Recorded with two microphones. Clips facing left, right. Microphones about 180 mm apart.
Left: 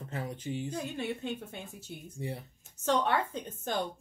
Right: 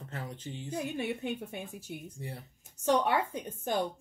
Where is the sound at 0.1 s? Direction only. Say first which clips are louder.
Left 5 dB; 15° left (ahead or behind).